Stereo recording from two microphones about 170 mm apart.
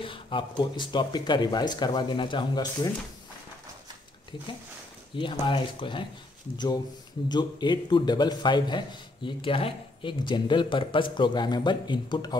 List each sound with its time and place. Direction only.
0.0 s a man's voice: 30° left (ahead or behind)
5.1 s a man's voice: 30° left (ahead or behind)
7.2 s a man's voice: 25° left (ahead or behind)